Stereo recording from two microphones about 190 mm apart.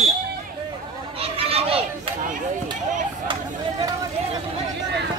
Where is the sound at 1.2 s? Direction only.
30° right (ahead or behind).